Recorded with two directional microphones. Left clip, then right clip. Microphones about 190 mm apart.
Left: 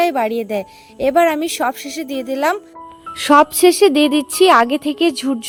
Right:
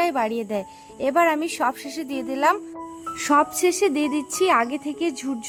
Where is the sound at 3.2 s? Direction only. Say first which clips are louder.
Left 9 dB; 35° left (ahead or behind).